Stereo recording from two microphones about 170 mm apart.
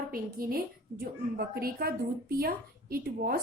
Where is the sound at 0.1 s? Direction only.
60° right (ahead or behind).